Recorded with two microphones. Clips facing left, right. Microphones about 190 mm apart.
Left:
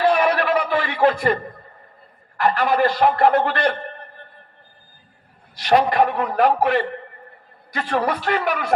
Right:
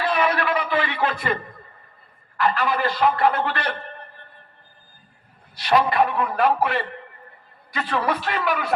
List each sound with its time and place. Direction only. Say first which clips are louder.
0.1 s a man's voice: left 4 dB; 45° left (ahead or behind)
2.4 s a man's voice: left 4 dB; 45° left (ahead or behind)
5.6 s a man's voice: left 3 dB; 45° left (ahead or behind)